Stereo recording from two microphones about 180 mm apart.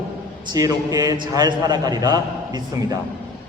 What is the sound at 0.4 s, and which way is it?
A man's voice, 20° right (ahead or behind).